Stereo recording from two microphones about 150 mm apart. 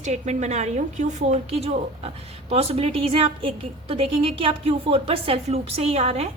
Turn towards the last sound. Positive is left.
turn(degrees=-40)  # may be behind; listen again after turning